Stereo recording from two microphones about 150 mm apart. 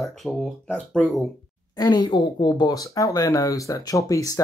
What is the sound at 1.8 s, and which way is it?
Speech, 25° left (ahead or behind).